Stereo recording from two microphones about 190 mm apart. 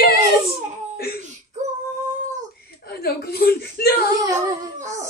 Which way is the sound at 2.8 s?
55° left (ahead or behind).